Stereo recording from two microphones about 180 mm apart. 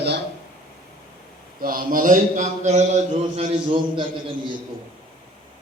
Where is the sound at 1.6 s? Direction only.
50° right (ahead or behind).